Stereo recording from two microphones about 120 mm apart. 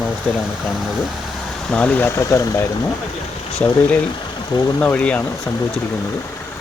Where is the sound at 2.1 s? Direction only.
25° left (ahead or behind).